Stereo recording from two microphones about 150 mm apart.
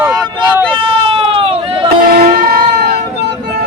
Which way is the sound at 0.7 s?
35° right (ahead or behind).